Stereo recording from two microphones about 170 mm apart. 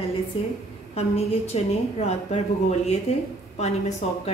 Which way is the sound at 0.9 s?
35° left (ahead or behind).